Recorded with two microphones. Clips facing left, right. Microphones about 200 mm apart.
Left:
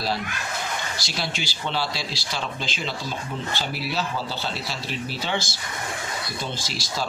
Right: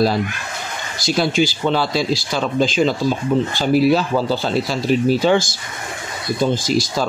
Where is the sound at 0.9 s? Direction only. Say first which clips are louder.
Right 13 dB; 50° right (ahead or behind).